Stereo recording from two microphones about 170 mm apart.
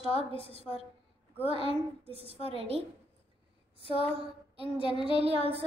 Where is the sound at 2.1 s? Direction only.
35° right (ahead or behind).